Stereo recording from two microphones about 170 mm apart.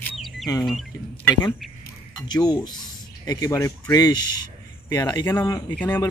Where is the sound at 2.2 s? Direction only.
25° left (ahead or behind).